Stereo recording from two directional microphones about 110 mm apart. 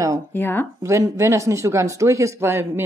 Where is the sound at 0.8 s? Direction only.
25° right (ahead or behind).